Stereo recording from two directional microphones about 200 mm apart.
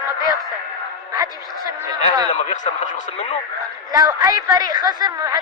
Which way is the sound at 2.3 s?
35° left (ahead or behind).